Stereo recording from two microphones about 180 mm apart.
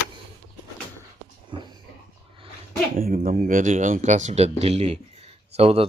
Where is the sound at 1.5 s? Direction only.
25° right (ahead or behind).